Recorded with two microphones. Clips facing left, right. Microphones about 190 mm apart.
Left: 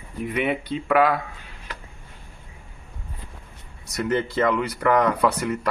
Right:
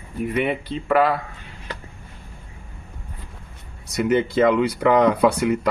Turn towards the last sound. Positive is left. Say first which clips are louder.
# right 4 dB
turn(degrees=-15)  # may be behind; listen again after turning